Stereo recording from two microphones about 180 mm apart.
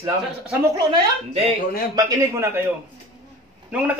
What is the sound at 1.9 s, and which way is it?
Speech, 15° right (ahead or behind).